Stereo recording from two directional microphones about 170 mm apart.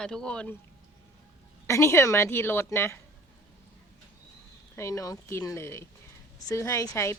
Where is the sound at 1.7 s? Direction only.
15° left (ahead or behind).